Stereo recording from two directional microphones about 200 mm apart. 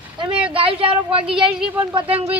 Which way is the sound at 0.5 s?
25° right (ahead or behind).